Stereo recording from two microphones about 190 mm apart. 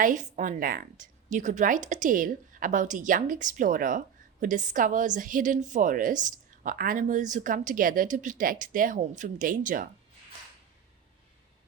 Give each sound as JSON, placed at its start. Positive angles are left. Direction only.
{"t": 0.0, "sound": "a woman's voice", "side_deg": -40}